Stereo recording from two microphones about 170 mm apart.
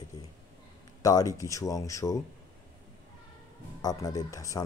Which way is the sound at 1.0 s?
20° left (ahead or behind).